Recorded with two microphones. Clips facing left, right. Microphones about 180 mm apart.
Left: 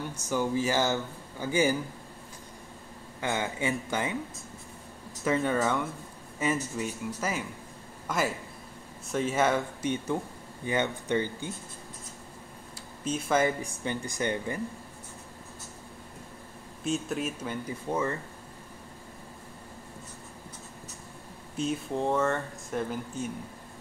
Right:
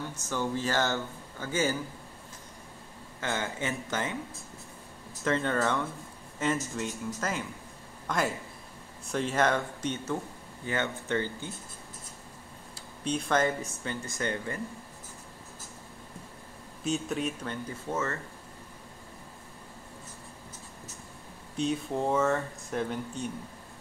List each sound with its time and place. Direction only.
0.2 s speech: 10° left (ahead or behind)
3.2 s speech: 15° left (ahead or behind)
5.2 s speech: 10° left (ahead or behind)
13.0 s speech: 5° left (ahead or behind)
16.8 s speech: centre (ahead or behind)
21.5 s speech: centre (ahead or behind)